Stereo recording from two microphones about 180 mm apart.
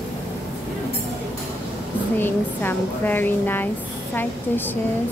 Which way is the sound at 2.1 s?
10° left (ahead or behind).